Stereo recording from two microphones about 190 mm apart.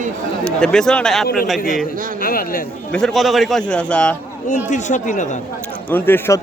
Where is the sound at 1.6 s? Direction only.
45° left (ahead or behind).